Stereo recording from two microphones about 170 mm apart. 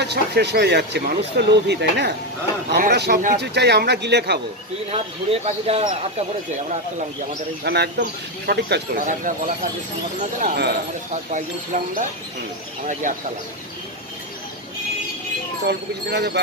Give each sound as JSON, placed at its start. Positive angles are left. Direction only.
{"t": 0.0, "sound": "speech", "side_deg": -80}
{"t": 3.3, "sound": "speech", "side_deg": -80}
{"t": 4.9, "sound": "speech", "side_deg": -35}
{"t": 7.6, "sound": "speech", "side_deg": -75}
{"t": 8.9, "sound": "speech", "side_deg": -50}
{"t": 10.5, "sound": "speech", "side_deg": -70}
{"t": 11.1, "sound": "speech", "side_deg": -45}
{"t": 15.6, "sound": "speech", "side_deg": -75}